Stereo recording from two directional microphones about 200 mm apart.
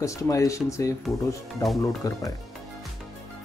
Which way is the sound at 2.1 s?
15° left (ahead or behind).